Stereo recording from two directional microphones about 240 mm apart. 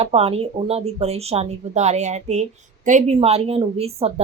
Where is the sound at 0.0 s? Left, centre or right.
Right.